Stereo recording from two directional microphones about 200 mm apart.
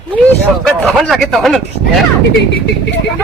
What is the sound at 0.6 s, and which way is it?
A man's voice, centre (ahead or behind).